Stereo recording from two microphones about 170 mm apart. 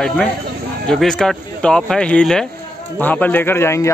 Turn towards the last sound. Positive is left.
turn(degrees=15)  # may be behind; listen again after turning